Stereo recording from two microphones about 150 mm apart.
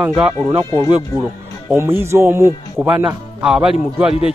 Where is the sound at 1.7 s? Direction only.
15° right (ahead or behind).